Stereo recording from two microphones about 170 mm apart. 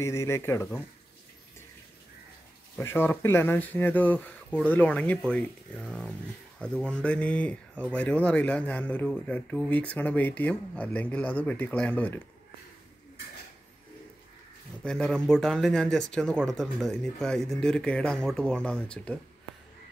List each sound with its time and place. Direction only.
0.0 s speech: 15° left (ahead or behind)
2.8 s speech: 15° left (ahead or behind)
5.9 s speech: 5° right (ahead or behind)
6.6 s speech: 5° left (ahead or behind)
14.8 s speech: 5° left (ahead or behind)